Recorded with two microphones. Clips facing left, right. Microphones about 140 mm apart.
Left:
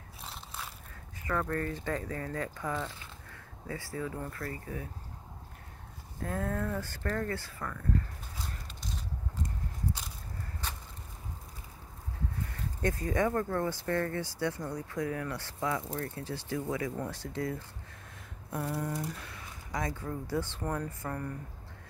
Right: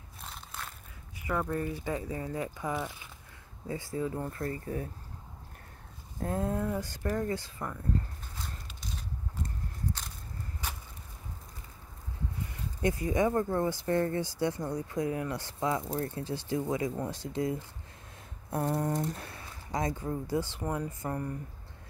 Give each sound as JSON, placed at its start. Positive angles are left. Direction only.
{"t": 0.2, "sound": "crushing", "side_deg": 0}
{"t": 1.2, "sound": "speech", "side_deg": -15}
{"t": 6.2, "sound": "speech", "side_deg": -20}
{"t": 12.8, "sound": "speech", "side_deg": -15}
{"t": 18.5, "sound": "speech", "side_deg": -40}